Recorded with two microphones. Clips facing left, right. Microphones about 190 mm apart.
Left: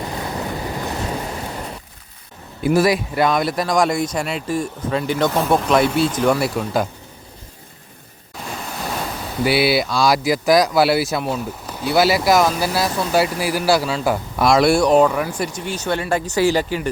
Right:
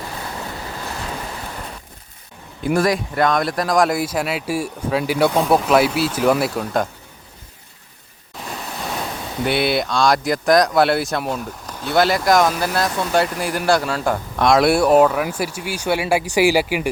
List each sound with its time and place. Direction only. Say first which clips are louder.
0.6 s boat: left 5 dB; 20° left (ahead or behind)
2.7 s speech: left 1 dB; 5° left (ahead or behind)
8.4 s waves: left 1 dB; centre (ahead or behind)
9.4 s speech: left 2 dB; 5° left (ahead or behind); by 16.9 s 10° right (ahead or behind)